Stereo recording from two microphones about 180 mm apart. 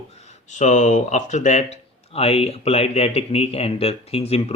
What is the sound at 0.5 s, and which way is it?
A man's voice, 45° left (ahead or behind).